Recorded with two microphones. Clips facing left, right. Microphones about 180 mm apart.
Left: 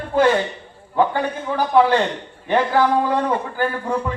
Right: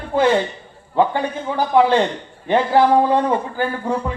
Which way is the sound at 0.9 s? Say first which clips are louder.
Right 1 dB; 15° right (ahead or behind).